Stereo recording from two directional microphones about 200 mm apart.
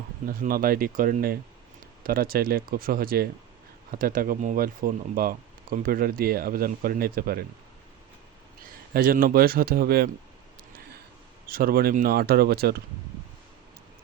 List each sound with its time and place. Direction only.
0.3 s speech: 45° right (ahead or behind)
8.9 s speech: 45° right (ahead or behind)
11.4 s speech: 45° right (ahead or behind)